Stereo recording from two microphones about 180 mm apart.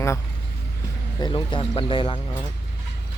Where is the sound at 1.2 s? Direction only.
25° left (ahead or behind).